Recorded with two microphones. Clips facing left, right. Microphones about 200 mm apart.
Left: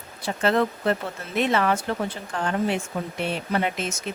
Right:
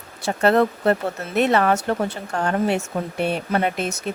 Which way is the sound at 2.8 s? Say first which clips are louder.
Right 5 dB; 55° right (ahead or behind).